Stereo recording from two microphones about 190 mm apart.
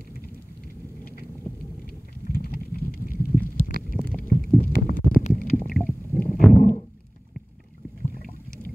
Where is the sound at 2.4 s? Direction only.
50° left (ahead or behind).